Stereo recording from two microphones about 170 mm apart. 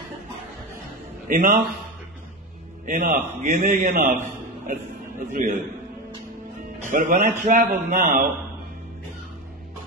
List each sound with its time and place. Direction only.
1.3 s speech: 50° right (ahead or behind)
2.9 s a man's voice: 55° right (ahead or behind)
3.4 s a man's voice: 45° right (ahead or behind)
6.8 s speech: 50° right (ahead or behind)